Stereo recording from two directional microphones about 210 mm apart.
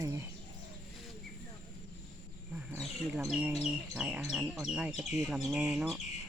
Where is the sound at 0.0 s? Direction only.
15° right (ahead or behind).